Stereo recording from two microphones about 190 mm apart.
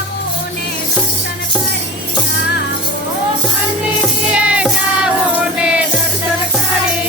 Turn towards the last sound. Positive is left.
turn(degrees=-5)  # may be behind; listen again after turning